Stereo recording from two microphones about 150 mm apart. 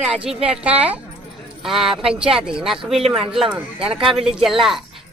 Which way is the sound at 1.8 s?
35° right (ahead or behind).